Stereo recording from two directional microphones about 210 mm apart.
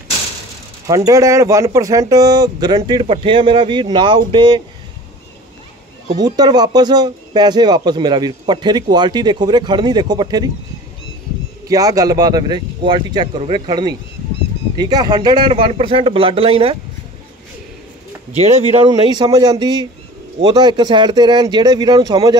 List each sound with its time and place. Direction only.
0.8 s speech: 15° right (ahead or behind)
6.1 s speech: 20° right (ahead or behind)
11.6 s speech: 15° right (ahead or behind)
18.4 s speech: 25° right (ahead or behind)